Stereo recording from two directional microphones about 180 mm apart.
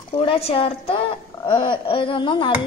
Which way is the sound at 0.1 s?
30° left (ahead or behind).